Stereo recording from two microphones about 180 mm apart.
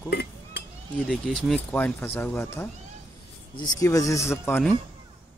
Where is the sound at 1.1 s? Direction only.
5° left (ahead or behind).